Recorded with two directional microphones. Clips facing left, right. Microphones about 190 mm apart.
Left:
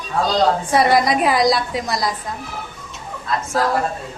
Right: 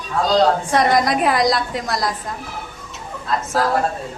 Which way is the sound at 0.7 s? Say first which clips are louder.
Left 1 dB; 5° left (ahead or behind).